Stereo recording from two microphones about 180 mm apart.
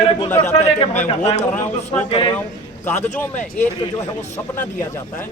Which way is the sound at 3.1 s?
10° left (ahead or behind).